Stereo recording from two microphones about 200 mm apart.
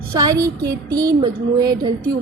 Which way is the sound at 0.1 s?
20° right (ahead or behind).